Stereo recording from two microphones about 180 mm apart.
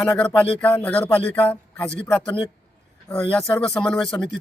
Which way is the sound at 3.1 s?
5° left (ahead or behind).